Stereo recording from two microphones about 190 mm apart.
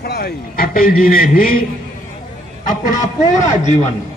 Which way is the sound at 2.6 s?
40° left (ahead or behind).